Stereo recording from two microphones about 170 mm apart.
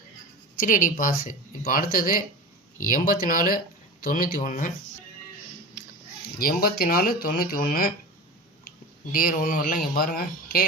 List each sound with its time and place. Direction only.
0.6 s speech: 55° left (ahead or behind)
6.4 s speech: 60° left (ahead or behind)
9.1 s speech: 55° left (ahead or behind)